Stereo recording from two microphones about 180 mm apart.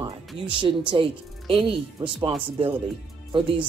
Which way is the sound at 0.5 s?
30° right (ahead or behind).